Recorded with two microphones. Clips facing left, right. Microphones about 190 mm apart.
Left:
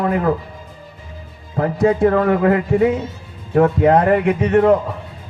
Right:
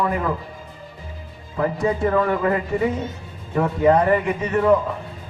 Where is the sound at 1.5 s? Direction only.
60° left (ahead or behind).